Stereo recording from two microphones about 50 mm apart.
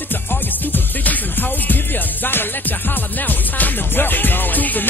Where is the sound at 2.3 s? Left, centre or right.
Left.